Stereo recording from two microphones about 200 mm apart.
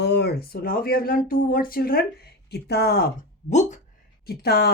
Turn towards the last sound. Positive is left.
turn(degrees=55)  # may be behind; listen again after turning